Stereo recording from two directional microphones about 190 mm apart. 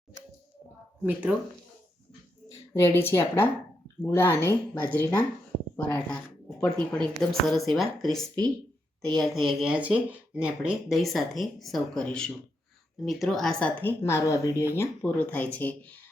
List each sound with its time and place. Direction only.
1.0 s speech: 5° right (ahead or behind)
2.7 s a woman's voice: 10° left (ahead or behind)
9.1 s a woman's voice: centre (ahead or behind); by 14.5 s 15° left (ahead or behind)
14.5 s speech: 10° right (ahead or behind)
14.8 s a woman's voice: 10° left (ahead or behind)